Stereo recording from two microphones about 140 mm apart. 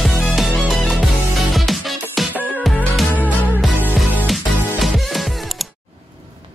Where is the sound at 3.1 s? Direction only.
10° right (ahead or behind).